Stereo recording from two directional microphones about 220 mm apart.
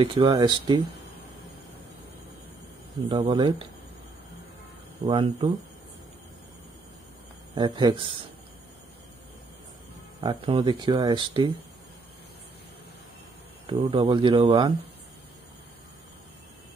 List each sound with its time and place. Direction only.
0.0 s speech: 25° right (ahead or behind)
3.1 s speech: 25° right (ahead or behind)
5.0 s speech: 25° right (ahead or behind)
7.5 s speech: 20° right (ahead or behind)
10.2 s speech: 20° right (ahead or behind)
13.7 s speech: 25° right (ahead or behind)